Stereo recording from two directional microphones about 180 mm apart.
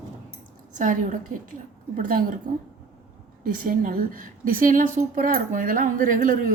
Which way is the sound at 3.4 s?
50° right (ahead or behind).